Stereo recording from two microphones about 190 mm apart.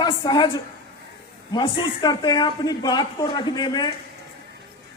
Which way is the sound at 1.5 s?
25° left (ahead or behind).